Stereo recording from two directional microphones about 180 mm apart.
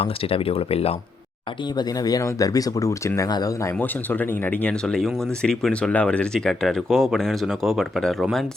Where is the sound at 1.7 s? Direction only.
20° left (ahead or behind).